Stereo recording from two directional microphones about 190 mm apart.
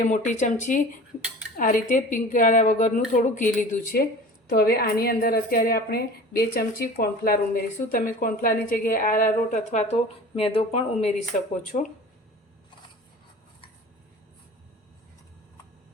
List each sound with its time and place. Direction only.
0.0 s a woman's voice: 40° left (ahead or behind)
4.4 s a woman's voice: 55° left (ahead or behind)
9.6 s speech: 35° left (ahead or behind)